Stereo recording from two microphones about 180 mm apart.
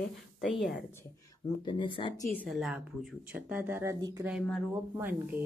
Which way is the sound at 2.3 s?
5° left (ahead or behind).